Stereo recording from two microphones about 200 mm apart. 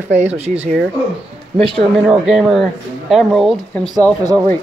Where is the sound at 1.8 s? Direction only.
5° right (ahead or behind).